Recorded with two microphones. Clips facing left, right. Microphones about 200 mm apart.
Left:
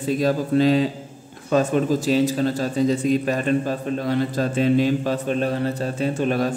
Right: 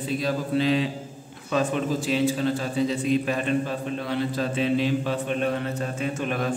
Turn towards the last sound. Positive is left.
turn(degrees=35)  # may be behind; listen again after turning